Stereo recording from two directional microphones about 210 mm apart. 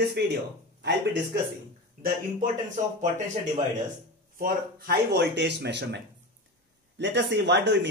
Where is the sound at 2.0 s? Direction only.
40° right (ahead or behind).